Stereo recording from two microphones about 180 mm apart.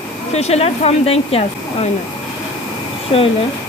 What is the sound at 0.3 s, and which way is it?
Speech, 35° left (ahead or behind).